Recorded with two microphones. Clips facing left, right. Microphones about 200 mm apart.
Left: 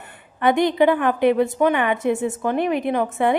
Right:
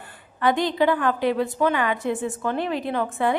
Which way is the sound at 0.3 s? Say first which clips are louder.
Left 4 dB; 20° left (ahead or behind).